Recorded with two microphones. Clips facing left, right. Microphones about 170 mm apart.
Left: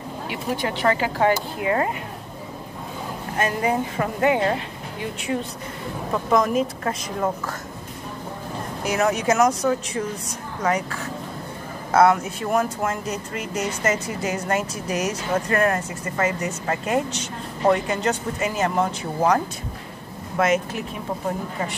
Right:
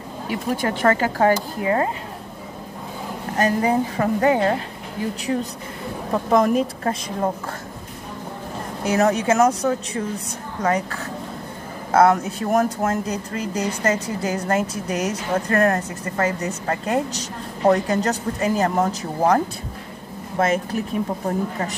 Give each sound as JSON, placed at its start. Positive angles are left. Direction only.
{"t": 0.3, "sound": "speech", "side_deg": -45}
{"t": 1.6, "sound": "a woman's voice", "side_deg": -30}
{"t": 3.3, "sound": "a woman's voice", "side_deg": -40}
{"t": 8.8, "sound": "a woman's voice", "side_deg": -30}